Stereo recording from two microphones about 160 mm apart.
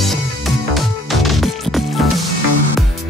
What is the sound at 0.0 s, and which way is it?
Music, centre (ahead or behind).